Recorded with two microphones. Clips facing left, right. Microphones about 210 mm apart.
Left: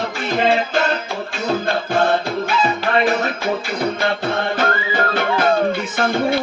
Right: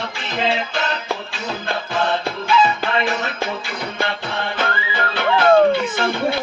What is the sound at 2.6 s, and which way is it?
Music, 40° left (ahead or behind).